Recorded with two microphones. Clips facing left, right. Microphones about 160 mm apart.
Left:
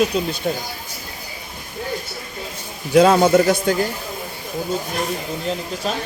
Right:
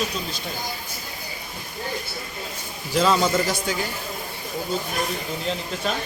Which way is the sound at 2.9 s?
60° left (ahead or behind).